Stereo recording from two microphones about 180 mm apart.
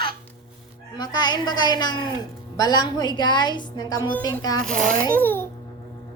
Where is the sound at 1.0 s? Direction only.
20° left (ahead or behind).